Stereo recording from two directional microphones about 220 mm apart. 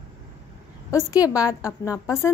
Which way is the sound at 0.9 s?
15° left (ahead or behind).